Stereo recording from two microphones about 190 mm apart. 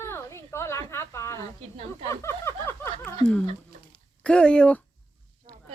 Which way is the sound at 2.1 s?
15° left (ahead or behind).